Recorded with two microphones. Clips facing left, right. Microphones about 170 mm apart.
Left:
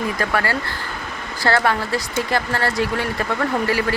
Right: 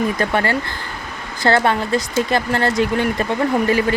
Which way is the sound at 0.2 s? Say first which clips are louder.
Right 3 dB; 25° right (ahead or behind).